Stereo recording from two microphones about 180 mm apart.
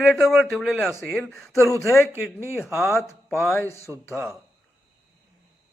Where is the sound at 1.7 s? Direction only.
15° left (ahead or behind).